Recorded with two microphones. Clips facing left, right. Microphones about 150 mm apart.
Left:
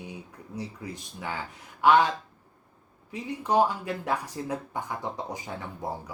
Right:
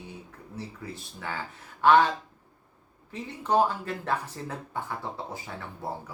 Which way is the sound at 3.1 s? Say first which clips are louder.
Left 1 dB; 10° left (ahead or behind).